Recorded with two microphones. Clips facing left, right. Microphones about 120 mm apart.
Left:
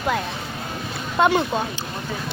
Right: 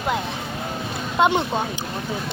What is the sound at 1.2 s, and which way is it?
Speech, 25° right (ahead or behind).